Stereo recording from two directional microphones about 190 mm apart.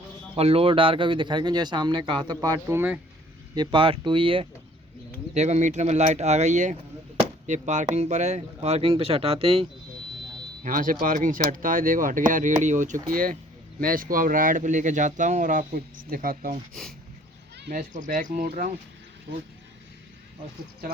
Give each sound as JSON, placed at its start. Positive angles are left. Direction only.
{"t": 0.3, "sound": "speech", "side_deg": -30}
{"t": 3.5, "sound": "speech", "side_deg": -25}
{"t": 10.6, "sound": "speech", "side_deg": -45}
{"t": 17.7, "sound": "speech", "side_deg": -45}